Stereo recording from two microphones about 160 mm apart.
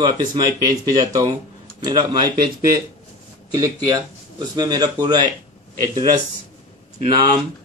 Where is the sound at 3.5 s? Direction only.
25° right (ahead or behind).